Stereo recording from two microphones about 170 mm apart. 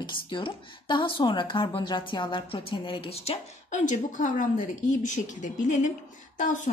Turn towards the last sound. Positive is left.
turn(degrees=45)  # may be behind; listen again after turning